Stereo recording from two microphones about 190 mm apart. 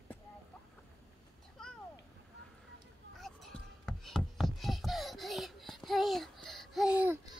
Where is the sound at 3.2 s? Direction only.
Centre (ahead or behind).